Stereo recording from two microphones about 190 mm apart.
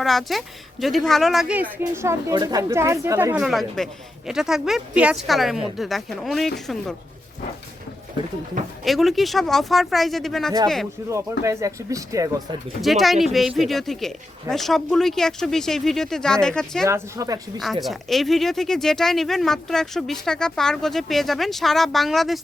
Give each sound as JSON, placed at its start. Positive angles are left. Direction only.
{"t": 0.0, "sound": "speech", "side_deg": 0}
{"t": 3.3, "sound": "speech", "side_deg": 0}
{"t": 8.8, "sound": "speech", "side_deg": 0}
{"t": 11.1, "sound": "speech", "side_deg": -15}
{"t": 12.8, "sound": "speech", "side_deg": 0}
{"t": 16.8, "sound": "speech", "side_deg": -15}
{"t": 17.6, "sound": "speech", "side_deg": 0}